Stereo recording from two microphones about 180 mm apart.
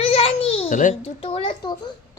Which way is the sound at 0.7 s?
45° left (ahead or behind).